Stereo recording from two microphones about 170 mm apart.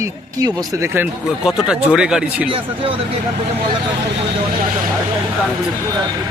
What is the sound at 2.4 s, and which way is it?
Speech, 30° right (ahead or behind).